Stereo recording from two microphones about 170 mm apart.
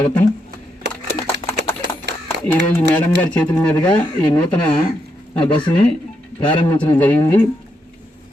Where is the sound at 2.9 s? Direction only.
5° left (ahead or behind).